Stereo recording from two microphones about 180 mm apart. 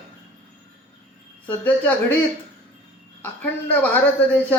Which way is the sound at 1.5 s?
10° left (ahead or behind).